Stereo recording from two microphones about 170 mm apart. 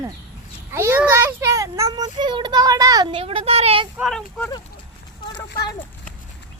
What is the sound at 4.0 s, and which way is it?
Speech, centre (ahead or behind).